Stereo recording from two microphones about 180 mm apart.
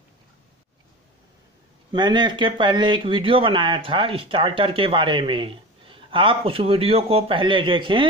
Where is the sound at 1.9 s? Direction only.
25° right (ahead or behind).